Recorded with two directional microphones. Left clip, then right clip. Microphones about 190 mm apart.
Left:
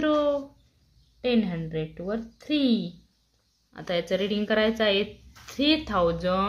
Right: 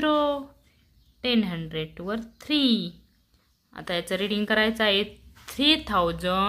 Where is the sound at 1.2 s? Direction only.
15° right (ahead or behind).